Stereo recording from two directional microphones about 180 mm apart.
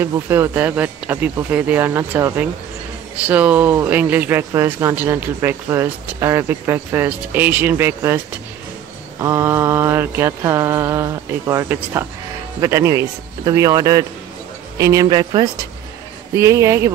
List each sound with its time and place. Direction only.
0.0 s speech: 15° right (ahead or behind)
9.2 s speech: 15° right (ahead or behind)